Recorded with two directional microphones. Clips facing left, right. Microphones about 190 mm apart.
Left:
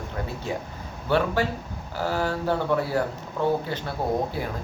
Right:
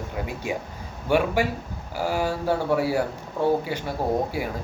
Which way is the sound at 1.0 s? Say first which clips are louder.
Right 1 dB; 10° right (ahead or behind).